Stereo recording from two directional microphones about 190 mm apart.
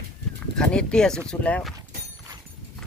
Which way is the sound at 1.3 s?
5° left (ahead or behind).